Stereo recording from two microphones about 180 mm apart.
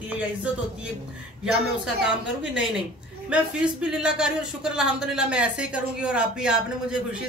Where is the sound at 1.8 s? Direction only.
5° right (ahead or behind).